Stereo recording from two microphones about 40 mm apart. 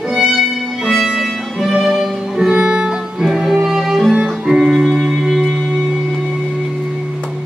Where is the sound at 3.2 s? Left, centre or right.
Centre.